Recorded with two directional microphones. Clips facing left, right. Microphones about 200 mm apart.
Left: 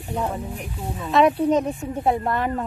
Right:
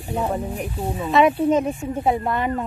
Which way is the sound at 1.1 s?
Centre (ahead or behind).